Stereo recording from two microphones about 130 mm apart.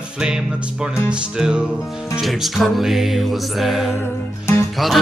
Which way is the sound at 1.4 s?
5° right (ahead or behind).